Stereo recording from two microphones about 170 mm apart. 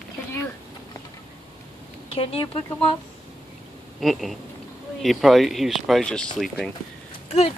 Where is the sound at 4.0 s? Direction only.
Centre (ahead or behind).